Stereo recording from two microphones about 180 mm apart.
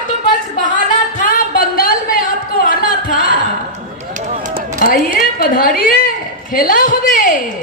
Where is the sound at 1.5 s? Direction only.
55° left (ahead or behind).